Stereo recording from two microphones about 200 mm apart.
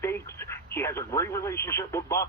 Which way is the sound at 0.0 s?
10° left (ahead or behind).